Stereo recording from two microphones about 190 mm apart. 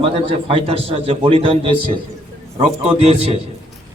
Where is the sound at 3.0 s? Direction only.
30° right (ahead or behind).